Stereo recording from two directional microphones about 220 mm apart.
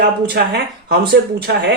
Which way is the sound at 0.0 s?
50° right (ahead or behind).